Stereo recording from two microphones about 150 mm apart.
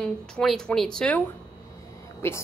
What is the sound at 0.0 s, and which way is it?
A woman's voice, 5° left (ahead or behind).